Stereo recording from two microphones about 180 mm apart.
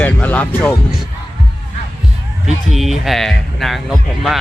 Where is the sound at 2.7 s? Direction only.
Centre (ahead or behind).